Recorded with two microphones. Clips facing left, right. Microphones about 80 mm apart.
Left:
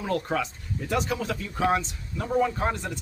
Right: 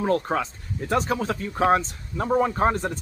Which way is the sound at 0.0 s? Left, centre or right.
Right.